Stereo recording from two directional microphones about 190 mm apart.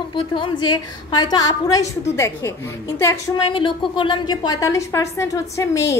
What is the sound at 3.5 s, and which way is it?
A woman's voice, 25° left (ahead or behind).